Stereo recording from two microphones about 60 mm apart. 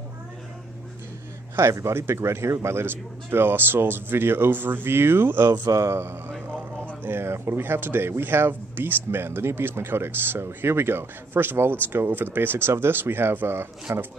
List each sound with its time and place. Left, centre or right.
1.6 s speech: right
5.6 s speech: right
5.9 s speech: right